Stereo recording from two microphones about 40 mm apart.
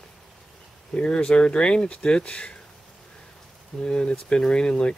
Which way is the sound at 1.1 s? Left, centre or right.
Left.